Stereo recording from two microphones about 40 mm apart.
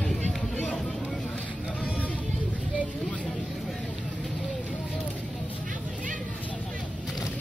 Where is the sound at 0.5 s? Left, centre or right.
Left.